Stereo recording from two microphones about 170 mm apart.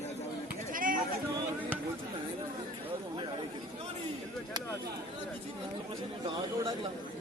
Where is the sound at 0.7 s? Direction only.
55° right (ahead or behind).